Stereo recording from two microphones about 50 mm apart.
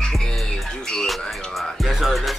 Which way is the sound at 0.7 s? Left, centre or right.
Centre.